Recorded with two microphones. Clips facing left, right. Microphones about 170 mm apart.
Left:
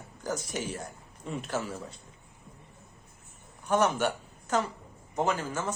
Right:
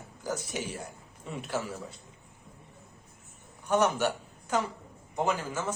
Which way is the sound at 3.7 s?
10° right (ahead or behind).